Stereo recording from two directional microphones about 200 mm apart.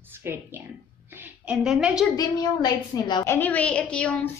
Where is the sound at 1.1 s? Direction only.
5° right (ahead or behind).